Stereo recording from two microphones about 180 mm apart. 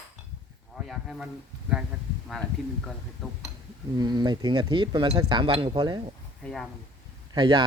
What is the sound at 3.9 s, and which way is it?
Speech, 25° right (ahead or behind).